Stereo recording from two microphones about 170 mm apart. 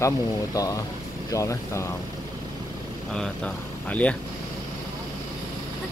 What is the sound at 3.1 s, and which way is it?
Speech, 5° left (ahead or behind).